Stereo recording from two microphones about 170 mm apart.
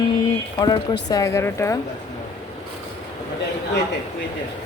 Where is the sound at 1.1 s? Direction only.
20° left (ahead or behind).